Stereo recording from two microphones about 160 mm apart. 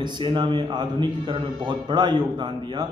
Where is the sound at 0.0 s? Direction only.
30° right (ahead or behind).